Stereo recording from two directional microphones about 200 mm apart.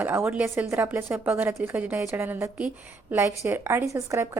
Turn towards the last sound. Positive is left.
turn(degrees=-15)  # may be behind; listen again after turning